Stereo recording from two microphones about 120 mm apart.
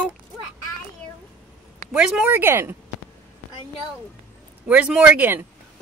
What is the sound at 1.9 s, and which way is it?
Speech, 10° right (ahead or behind).